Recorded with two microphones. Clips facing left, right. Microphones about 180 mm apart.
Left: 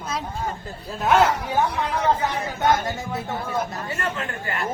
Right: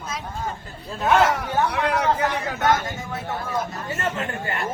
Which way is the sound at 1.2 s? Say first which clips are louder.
Even; 75° right (ahead or behind).